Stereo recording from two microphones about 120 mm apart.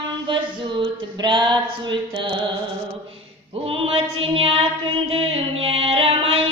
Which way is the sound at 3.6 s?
50° right (ahead or behind).